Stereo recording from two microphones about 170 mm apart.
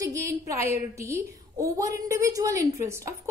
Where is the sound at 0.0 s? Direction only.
20° right (ahead or behind).